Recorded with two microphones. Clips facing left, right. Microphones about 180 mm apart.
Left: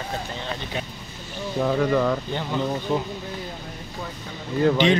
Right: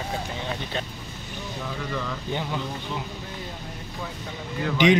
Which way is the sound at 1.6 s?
50° left (ahead or behind).